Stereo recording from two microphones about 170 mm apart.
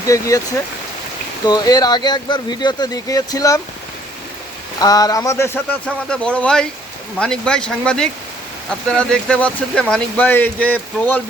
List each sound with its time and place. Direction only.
0.0 s speech: 20° left (ahead or behind)
1.5 s speech: 25° left (ahead or behind)
4.8 s speech: 20° left (ahead or behind)